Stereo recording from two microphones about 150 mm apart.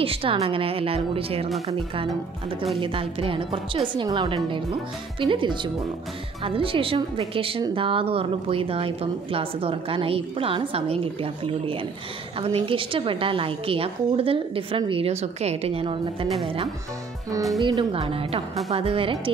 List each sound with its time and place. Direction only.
0.0 s a woman's voice: 40° right (ahead or behind)
2.8 s a woman's voice: 35° right (ahead or behind)
17.6 s a woman's voice: 35° right (ahead or behind)